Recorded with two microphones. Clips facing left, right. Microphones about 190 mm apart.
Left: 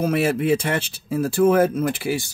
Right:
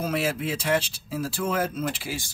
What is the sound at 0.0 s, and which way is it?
Speech, 55° left (ahead or behind).